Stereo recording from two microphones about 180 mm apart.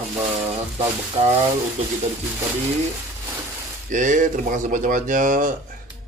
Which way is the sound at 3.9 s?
45° right (ahead or behind).